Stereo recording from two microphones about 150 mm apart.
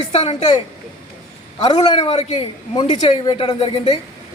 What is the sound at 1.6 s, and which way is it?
A man's voice, 30° left (ahead or behind).